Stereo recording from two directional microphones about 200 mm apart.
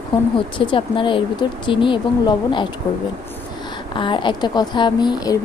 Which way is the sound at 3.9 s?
25° left (ahead or behind).